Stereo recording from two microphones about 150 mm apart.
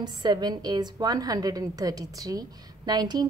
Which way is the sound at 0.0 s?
30° right (ahead or behind).